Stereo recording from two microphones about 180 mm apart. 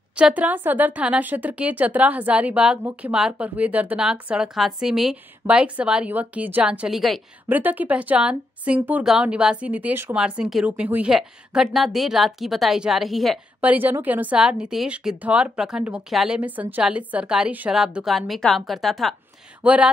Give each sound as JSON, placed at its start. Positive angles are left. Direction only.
{"t": 0.1, "sound": "speech", "side_deg": -5}